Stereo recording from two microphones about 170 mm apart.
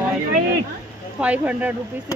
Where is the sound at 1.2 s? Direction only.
10° right (ahead or behind).